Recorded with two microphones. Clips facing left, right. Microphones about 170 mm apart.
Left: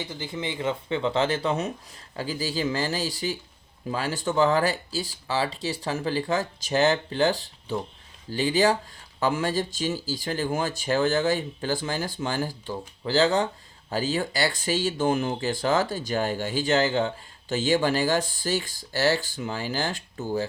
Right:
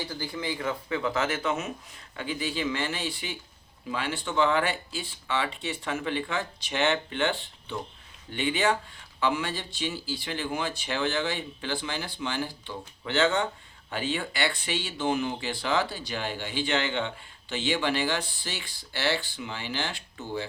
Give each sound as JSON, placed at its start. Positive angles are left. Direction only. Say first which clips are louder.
{"t": 0.0, "sound": "speech", "louder": "left 1 dB", "side_deg": 20}